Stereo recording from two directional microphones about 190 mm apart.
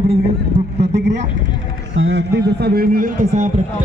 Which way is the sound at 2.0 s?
65° right (ahead or behind).